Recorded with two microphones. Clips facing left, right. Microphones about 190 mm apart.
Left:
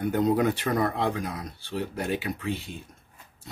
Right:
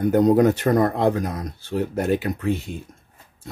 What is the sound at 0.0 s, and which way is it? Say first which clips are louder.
Speech: right 7 dB; 45° right (ahead or behind).